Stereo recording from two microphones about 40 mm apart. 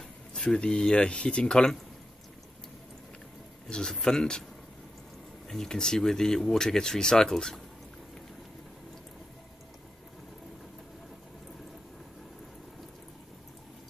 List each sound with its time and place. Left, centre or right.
0.5 s speech: left
3.7 s speech: centre
5.5 s speech: centre